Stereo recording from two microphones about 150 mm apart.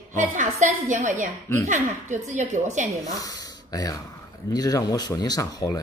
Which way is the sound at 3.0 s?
25° left (ahead or behind).